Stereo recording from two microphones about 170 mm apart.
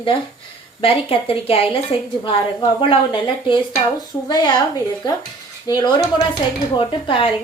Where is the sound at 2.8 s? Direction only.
30° left (ahead or behind).